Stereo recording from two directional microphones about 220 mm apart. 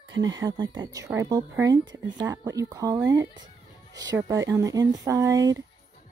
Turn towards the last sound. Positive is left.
turn(degrees=-15)  # may be behind; listen again after turning